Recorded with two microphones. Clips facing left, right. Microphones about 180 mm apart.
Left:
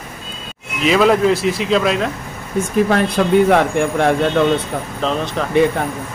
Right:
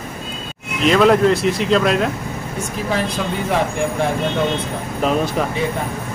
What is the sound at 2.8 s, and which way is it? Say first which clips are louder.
Speech: left 5 dB; 60° left (ahead or behind).